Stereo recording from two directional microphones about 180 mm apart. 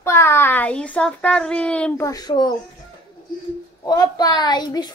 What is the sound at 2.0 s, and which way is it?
Speech, 20° left (ahead or behind).